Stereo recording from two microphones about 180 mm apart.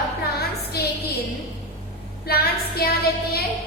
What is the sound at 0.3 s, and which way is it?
Music, 60° left (ahead or behind).